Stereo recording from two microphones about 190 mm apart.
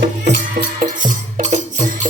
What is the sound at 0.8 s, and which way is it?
Music, 40° right (ahead or behind).